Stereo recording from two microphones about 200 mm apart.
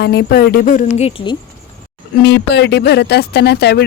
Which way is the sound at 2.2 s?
60° left (ahead or behind).